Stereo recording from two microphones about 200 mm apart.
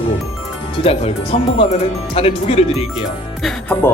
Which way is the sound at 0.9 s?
30° left (ahead or behind).